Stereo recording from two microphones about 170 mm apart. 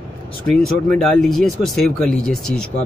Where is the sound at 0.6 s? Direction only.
5° left (ahead or behind).